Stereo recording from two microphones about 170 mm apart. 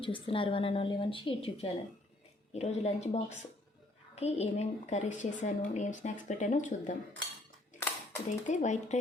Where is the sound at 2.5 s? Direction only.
40° left (ahead or behind).